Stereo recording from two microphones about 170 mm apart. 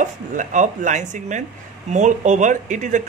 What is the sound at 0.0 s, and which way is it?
Speech, 45° right (ahead or behind).